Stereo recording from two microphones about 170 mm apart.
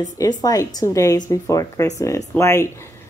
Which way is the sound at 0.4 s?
20° left (ahead or behind).